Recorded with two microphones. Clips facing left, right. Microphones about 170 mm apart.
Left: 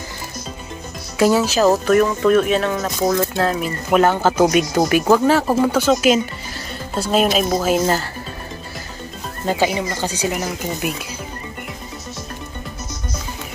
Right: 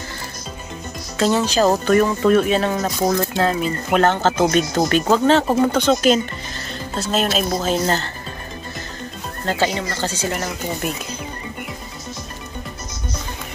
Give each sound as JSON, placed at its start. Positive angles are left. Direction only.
{"t": 1.1, "sound": "speech", "side_deg": 10}
{"t": 9.5, "sound": "speech", "side_deg": 10}